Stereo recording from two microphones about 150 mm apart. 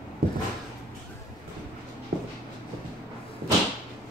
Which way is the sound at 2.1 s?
90° right.